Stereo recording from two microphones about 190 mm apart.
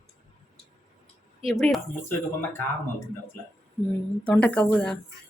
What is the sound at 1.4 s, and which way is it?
Speech, centre (ahead or behind).